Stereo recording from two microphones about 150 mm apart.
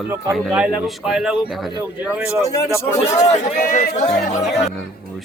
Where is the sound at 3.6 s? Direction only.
70° left (ahead or behind); by 4.2 s 45° left (ahead or behind).